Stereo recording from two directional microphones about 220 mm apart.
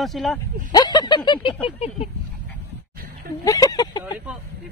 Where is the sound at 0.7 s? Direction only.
20° left (ahead or behind).